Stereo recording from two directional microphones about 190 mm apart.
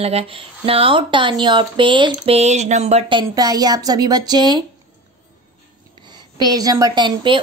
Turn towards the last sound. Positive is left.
turn(degrees=-25)  # may be behind; listen again after turning